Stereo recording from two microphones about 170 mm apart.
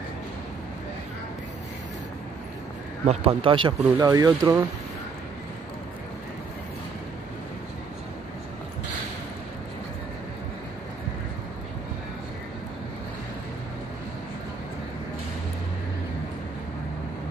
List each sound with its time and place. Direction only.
3.1 s speech: 35° right (ahead or behind)
4.1 s speech: 20° right (ahead or behind)